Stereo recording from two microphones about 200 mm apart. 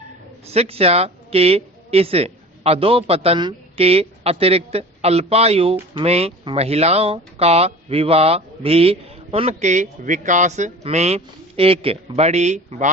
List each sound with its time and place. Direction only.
0.5 s a woman's voice: 30° right (ahead or behind)